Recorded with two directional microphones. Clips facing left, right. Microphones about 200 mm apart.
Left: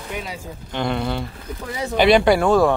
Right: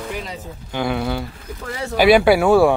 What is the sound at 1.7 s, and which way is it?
Speech, 20° left (ahead or behind).